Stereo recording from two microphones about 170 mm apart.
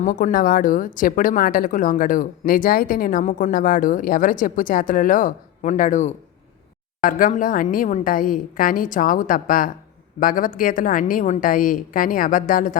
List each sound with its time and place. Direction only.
0.0 s speech: 50° left (ahead or behind)